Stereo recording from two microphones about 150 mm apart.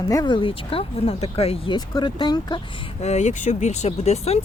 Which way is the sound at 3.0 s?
50° left (ahead or behind).